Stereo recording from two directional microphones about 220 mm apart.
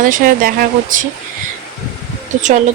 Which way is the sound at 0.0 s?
40° right (ahead or behind).